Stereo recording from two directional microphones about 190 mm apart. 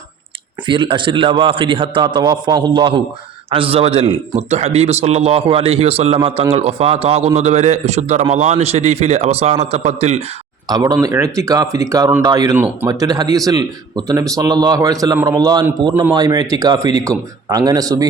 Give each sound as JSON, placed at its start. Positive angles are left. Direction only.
{"t": 0.6, "sound": "a man's voice", "side_deg": -25}
{"t": 10.7, "sound": "speech", "side_deg": -20}